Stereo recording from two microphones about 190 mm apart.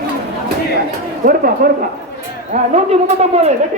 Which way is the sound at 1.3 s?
50° right (ahead or behind).